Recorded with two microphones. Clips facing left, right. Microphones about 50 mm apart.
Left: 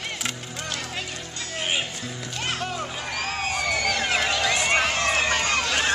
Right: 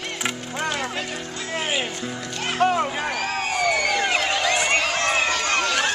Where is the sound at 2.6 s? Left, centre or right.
Right.